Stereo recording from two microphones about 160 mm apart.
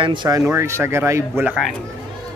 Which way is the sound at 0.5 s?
15° right (ahead or behind).